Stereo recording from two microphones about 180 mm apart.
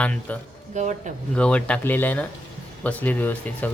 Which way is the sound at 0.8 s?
40° right (ahead or behind).